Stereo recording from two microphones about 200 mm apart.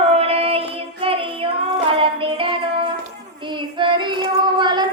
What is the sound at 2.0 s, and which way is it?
Child singing, 25° right (ahead or behind).